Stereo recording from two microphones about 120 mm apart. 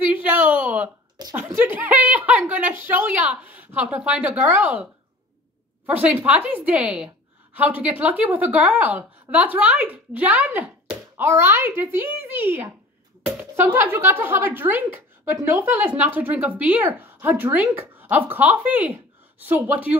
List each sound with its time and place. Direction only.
0.1 s a sound: 15° right (ahead or behind)
1.3 s speech: 15° right (ahead or behind)
5.9 s speech: 10° right (ahead or behind)